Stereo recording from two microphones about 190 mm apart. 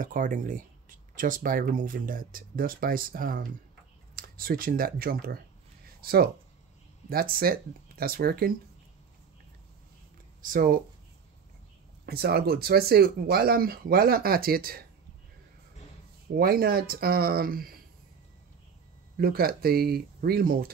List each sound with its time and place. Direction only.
0.0 s speech: 45° right (ahead or behind)
10.4 s speech: 45° right (ahead or behind)
12.1 s speech: 55° right (ahead or behind)
16.3 s speech: 50° right (ahead or behind)
19.1 s speech: 50° right (ahead or behind)